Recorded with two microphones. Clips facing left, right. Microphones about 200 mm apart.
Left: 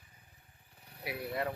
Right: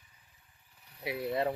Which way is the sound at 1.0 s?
25° right (ahead or behind).